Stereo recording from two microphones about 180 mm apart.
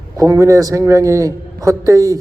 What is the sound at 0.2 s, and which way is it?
A man's voice, 15° right (ahead or behind).